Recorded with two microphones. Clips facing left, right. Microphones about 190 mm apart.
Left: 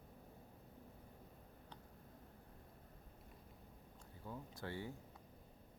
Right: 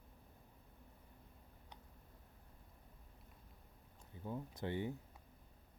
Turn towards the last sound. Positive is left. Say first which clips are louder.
# right 6 dB
turn(degrees=-20)  # may be behind; listen again after turning